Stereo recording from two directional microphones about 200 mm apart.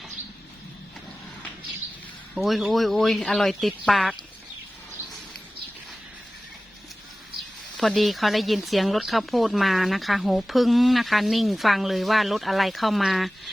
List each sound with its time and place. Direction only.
2.3 s speech: centre (ahead or behind)
7.8 s speech: centre (ahead or behind)